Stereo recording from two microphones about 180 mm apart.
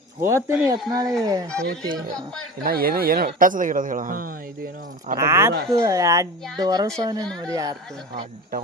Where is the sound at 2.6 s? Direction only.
55° right (ahead or behind).